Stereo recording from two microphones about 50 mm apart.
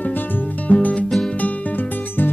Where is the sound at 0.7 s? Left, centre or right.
Left.